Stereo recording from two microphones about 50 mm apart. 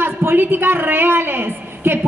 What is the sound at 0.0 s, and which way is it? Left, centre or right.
A woman's voice, right.